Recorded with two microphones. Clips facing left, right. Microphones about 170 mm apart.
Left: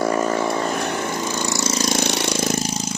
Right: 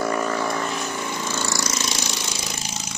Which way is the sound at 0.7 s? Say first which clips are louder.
Left 5 dB; 65° left (ahead or behind).